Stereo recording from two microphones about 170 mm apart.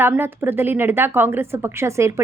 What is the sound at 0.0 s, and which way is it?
Speech, 15° right (ahead or behind).